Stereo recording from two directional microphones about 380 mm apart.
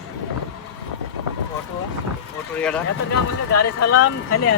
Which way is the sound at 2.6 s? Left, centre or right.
Centre.